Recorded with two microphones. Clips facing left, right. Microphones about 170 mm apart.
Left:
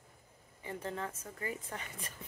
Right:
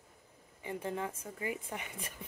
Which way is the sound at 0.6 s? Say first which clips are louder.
Right 2 dB; 15° right (ahead or behind).